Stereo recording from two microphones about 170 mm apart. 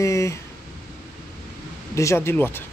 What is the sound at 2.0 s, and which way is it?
Speech, 15° left (ahead or behind).